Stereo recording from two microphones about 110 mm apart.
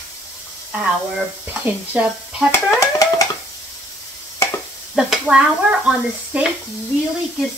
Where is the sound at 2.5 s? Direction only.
25° left (ahead or behind).